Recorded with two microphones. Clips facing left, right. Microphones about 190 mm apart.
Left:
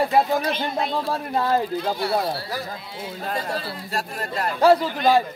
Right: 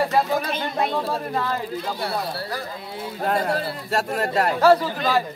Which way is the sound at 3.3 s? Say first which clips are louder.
Right 6 dB; 55° right (ahead or behind).